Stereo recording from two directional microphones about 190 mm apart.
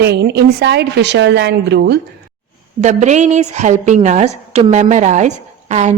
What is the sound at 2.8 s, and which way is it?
A woman's voice, 40° right (ahead or behind).